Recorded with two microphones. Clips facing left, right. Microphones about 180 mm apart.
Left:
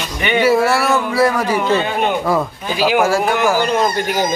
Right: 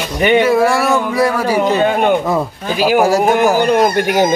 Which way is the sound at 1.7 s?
45° right (ahead or behind).